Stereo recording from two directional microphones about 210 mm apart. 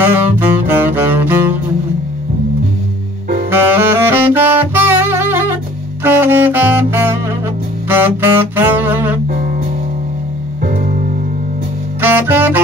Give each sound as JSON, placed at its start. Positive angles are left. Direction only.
{"t": 0.0, "sound": "music", "side_deg": -10}
{"t": 3.4, "sound": "saxophone", "side_deg": -10}
{"t": 10.6, "sound": "music", "side_deg": -40}
{"t": 12.0, "sound": "saxophone", "side_deg": -10}